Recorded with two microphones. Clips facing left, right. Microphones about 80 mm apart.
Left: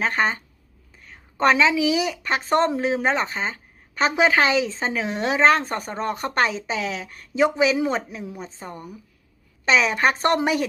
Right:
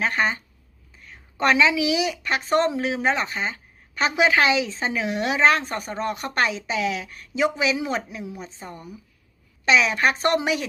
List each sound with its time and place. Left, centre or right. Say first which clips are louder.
0.0 s a woman's voice: left 1 dB; left